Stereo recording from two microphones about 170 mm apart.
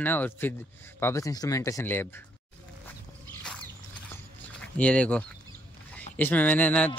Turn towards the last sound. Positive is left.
turn(degrees=10)  # may be behind; listen again after turning